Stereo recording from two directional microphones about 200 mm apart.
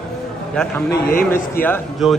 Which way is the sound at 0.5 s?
5° left (ahead or behind).